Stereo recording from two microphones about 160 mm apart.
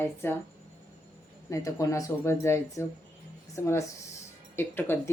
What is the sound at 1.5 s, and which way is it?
Speech, 20° left (ahead or behind).